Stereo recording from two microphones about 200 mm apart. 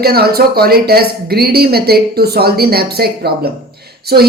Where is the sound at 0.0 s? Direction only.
50° right (ahead or behind).